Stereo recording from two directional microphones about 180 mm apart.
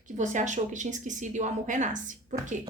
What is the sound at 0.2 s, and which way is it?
A woman's voice, 45° right (ahead or behind).